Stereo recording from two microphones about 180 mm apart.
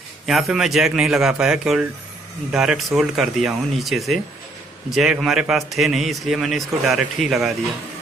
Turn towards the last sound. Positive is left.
turn(degrees=0)  # may be behind; listen again after turning